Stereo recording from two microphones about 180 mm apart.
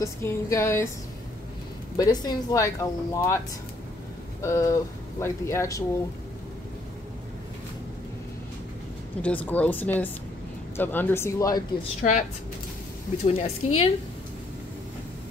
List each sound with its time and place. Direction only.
0.0 s speech: 15° left (ahead or behind)
2.0 s speech: 20° left (ahead or behind)
4.4 s speech: 20° left (ahead or behind)
9.2 s speech: 10° left (ahead or behind)
12.0 s a woman's voice: 45° left (ahead or behind)